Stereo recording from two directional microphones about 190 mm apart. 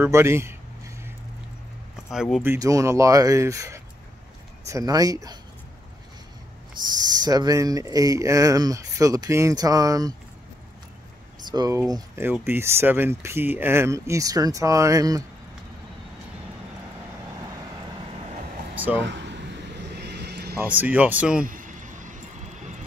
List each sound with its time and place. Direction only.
0.0 s a sound: 15° right (ahead or behind)
2.1 s speech: centre (ahead or behind)
2.4 s speech: 15° right (ahead or behind)
6.9 s speech: 20° right (ahead or behind)
11.5 s speech: 20° right (ahead or behind)
17.5 s vehicle: 20° right (ahead or behind)
19.0 s air conditioning: 65° right (ahead or behind)
20.0 s vehicle: 60° right (ahead or behind)
20.5 s speech: 10° right (ahead or behind)
21.5 s vehicle: 45° right (ahead or behind)